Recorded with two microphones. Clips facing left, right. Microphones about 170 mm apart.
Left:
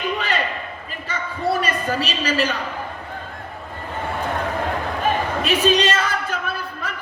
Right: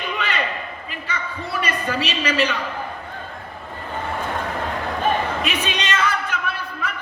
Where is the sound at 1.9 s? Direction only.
35° left (ahead or behind).